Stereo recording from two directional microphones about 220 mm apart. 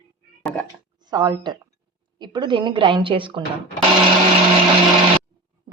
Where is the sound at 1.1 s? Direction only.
20° right (ahead or behind).